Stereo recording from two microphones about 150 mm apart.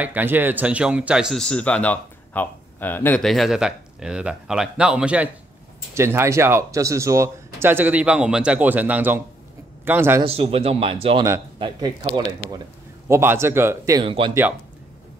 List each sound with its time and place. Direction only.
0.0 s speech: 10° right (ahead or behind); by 3.3 s 10° left (ahead or behind)
3.3 s a man's voice: centre (ahead or behind)
10.2 s speech: 40° right (ahead or behind)
13.1 s a man's voice: 15° right (ahead or behind)
13.9 s speech: 35° right (ahead or behind)